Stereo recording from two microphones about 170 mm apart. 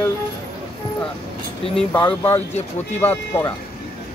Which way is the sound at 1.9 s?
15° left (ahead or behind).